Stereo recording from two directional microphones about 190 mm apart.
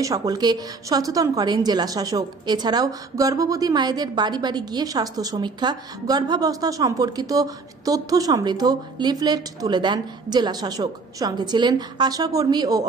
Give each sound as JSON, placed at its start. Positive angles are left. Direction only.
{"t": 0.0, "sound": "a woman's voice", "side_deg": -20}